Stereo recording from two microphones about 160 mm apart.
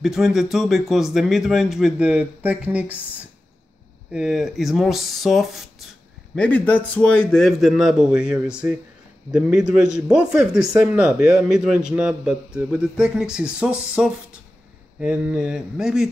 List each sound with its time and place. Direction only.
0.0 s a man's voice: centre (ahead or behind)
4.1 s a man's voice: 5° right (ahead or behind)